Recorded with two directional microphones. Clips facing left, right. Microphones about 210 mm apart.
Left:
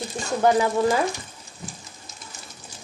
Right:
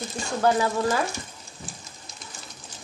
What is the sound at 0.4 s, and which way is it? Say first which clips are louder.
Speech: left 3 dB; 15° left (ahead or behind).